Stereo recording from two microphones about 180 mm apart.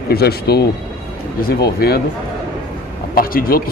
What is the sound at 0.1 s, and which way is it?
Speech, 60° left (ahead or behind).